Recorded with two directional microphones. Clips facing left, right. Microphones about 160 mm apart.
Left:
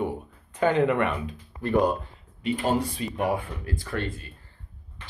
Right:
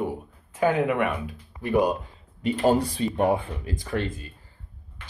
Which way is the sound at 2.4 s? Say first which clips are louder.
Right 4 dB; 40° right (ahead or behind).